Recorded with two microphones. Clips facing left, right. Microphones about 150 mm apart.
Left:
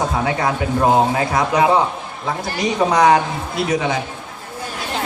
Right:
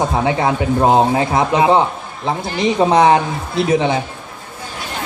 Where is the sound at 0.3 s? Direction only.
25° right (ahead or behind).